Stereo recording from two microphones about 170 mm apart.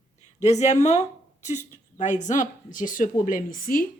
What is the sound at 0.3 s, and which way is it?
A woman's voice, 40° left (ahead or behind).